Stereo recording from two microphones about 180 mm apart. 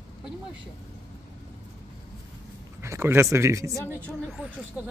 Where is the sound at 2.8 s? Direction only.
15° right (ahead or behind).